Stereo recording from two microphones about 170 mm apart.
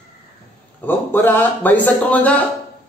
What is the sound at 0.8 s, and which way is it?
A man's voice, 10° left (ahead or behind).